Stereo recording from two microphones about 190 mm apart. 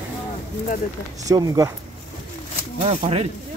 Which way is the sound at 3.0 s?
35° right (ahead or behind).